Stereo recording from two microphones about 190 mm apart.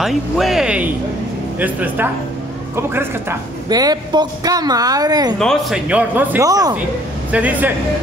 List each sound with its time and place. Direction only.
0.0 s a woman's voice: centre (ahead or behind); by 5.3 s 20° right (ahead or behind)
5.4 s speech: centre (ahead or behind); by 6.8 s 20° right (ahead or behind)
7.2 s speech: 10° right (ahead or behind)